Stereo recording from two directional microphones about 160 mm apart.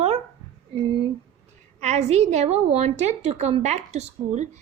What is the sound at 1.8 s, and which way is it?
A woman's voice, 45° right (ahead or behind).